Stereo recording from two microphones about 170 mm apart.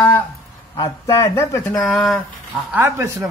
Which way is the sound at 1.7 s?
Centre (ahead or behind).